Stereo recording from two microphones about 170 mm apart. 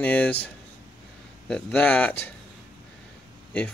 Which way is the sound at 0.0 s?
10° left (ahead or behind).